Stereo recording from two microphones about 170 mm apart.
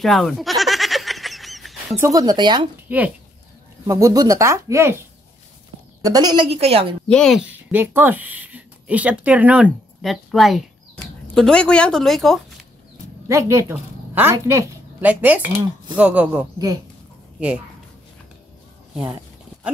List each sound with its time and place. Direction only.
0.0 s a sound: centre (ahead or behind)
2.0 s speech: 20° right (ahead or behind)
3.8 s speech: 20° right (ahead or behind)
6.0 s speech: 20° right (ahead or behind)
7.1 s speech: 5° left (ahead or behind)
13.3 s a woman's voice: 15° right (ahead or behind)